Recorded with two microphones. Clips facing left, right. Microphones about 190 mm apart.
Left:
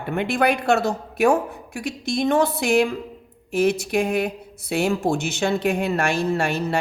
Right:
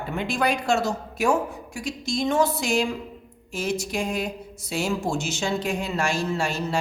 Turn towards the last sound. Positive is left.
turn(degrees=60)  # may be behind; listen again after turning